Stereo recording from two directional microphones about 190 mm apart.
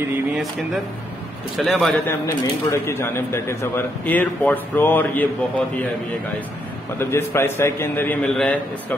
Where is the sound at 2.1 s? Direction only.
15° left (ahead or behind).